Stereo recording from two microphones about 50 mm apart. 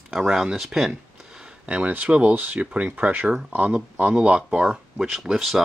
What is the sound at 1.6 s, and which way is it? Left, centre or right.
Speech, right.